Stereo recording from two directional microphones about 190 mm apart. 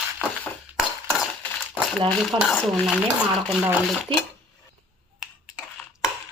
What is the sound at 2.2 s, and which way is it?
Dishes, centre (ahead or behind).